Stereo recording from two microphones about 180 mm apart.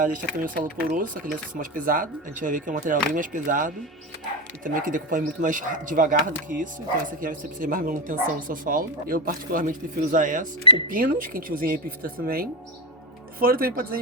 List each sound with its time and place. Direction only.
0.0 s speech: 50° right (ahead or behind)
7.2 s speech: 50° right (ahead or behind)
10.6 s speech: 25° left (ahead or behind)
10.8 s speech: 50° right (ahead or behind)